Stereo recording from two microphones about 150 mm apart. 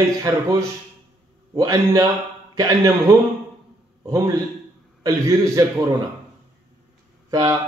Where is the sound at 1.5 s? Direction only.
20° right (ahead or behind).